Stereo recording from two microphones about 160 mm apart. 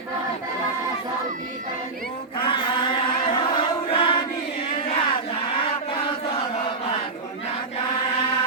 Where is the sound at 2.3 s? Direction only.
30° left (ahead or behind).